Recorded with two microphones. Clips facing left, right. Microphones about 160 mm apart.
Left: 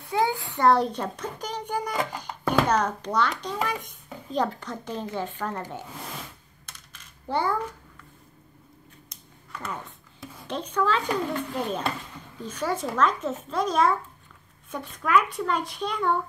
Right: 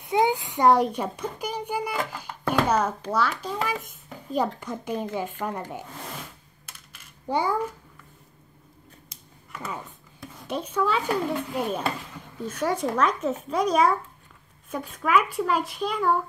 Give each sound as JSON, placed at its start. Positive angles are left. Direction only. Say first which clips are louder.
{"t": 0.0, "sound": "a child's voice", "louder": "right 3 dB", "side_deg": -20}
{"t": 2.0, "sound": "music", "louder": "left 1 dB", "side_deg": 15}
{"t": 2.5, "sound": "a child's voice", "louder": "even", "side_deg": -5}
{"t": 6.6, "sound": "typing", "louder": "even", "side_deg": -10}
{"t": 9.5, "sound": "a child's voice", "louder": "even", "side_deg": -5}